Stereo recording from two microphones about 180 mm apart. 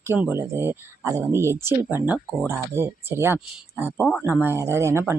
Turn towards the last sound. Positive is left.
turn(degrees=-15)  # may be behind; listen again after turning